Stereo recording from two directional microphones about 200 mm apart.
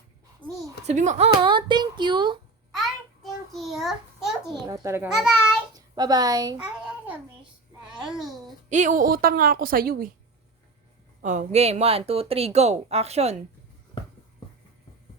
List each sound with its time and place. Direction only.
0.4 s speech: 25° right (ahead or behind)
0.9 s speech: 35° right (ahead or behind)
2.7 s a sound: centre (ahead or behind)
4.6 s a child's voice: 15° right (ahead or behind)
5.0 s a child's voice: 5° right (ahead or behind)
5.7 s a woman's voice: 20° right (ahead or behind)
6.6 s babbling: 5° right (ahead or behind)
8.0 s a child's voice: centre (ahead or behind)
8.7 s a woman's voice: 40° right (ahead or behind)
11.2 s a woman's voice: 35° right (ahead or behind)